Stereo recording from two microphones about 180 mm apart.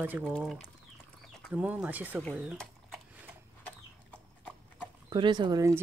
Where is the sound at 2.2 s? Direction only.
Centre (ahead or behind).